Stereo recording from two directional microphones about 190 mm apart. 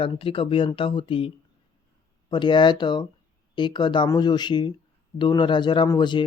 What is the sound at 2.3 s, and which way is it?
Speech, 25° left (ahead or behind).